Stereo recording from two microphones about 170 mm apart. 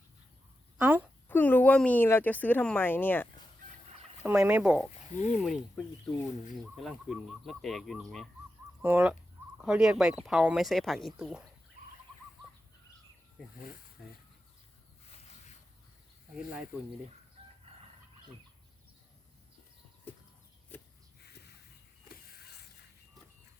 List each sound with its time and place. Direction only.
0.8 s speech: 10° right (ahead or behind)
1.3 s speech: 10° left (ahead or behind)
4.3 s speech: 10° right (ahead or behind)
8.8 s speech: 10° right (ahead or behind)
16.3 s speech: 5° right (ahead or behind)
20.7 s a sound: 10° left (ahead or behind)
22.1 s a sound: 65° left (ahead or behind)